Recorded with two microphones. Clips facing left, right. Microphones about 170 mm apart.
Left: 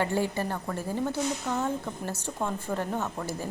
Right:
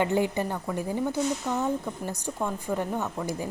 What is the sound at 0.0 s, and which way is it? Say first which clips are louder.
Speech: right 3 dB; 15° right (ahead or behind).